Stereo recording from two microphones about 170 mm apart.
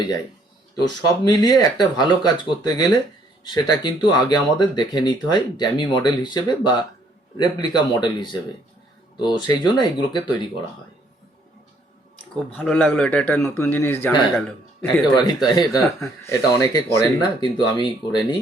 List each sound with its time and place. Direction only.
0.8 s speech: 25° left (ahead or behind)
12.5 s a man's voice: 5° left (ahead or behind)
15.1 s a man's voice: 25° left (ahead or behind)